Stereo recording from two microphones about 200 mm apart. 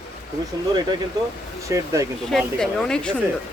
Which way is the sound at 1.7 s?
15° right (ahead or behind).